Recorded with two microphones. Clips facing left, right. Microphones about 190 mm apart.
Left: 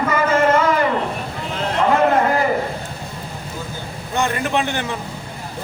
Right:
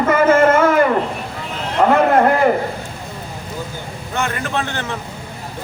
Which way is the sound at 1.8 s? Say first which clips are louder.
Right 4 dB; 65° right (ahead or behind).